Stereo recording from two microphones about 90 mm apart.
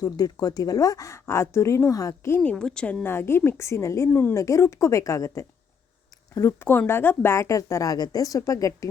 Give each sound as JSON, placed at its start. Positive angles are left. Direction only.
{"t": 0.0, "sound": "a woman's voice", "side_deg": 45}
{"t": 2.4, "sound": "speech", "side_deg": 10}
{"t": 3.1, "sound": "a woman's voice", "side_deg": 25}
{"t": 4.4, "sound": "a woman's voice", "side_deg": 35}
{"t": 6.6, "sound": "a woman's voice", "side_deg": 25}